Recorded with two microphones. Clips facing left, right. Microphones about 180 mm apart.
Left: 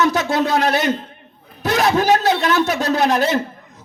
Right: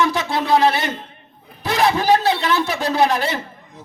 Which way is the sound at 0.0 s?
45° left (ahead or behind).